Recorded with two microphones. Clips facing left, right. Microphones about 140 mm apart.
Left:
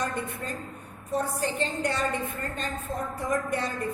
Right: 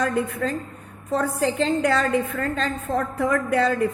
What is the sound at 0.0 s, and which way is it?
A woman's voice, 90° right.